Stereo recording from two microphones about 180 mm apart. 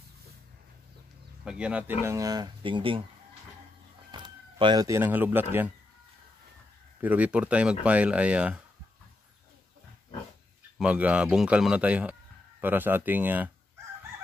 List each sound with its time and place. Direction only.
1.4 s speech: 5° right (ahead or behind); by 3.0 s 30° right (ahead or behind)
4.1 s speech: 25° right (ahead or behind)
7.0 s speech: 10° right (ahead or behind)
10.8 s speech: 5° right (ahead or behind)